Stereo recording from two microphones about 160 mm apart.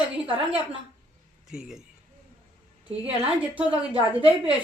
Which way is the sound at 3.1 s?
35° right (ahead or behind).